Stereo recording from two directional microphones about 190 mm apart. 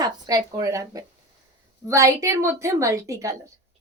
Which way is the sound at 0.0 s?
20° right (ahead or behind).